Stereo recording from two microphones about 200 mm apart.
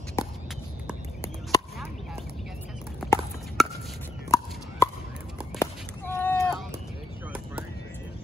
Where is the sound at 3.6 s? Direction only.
Centre (ahead or behind).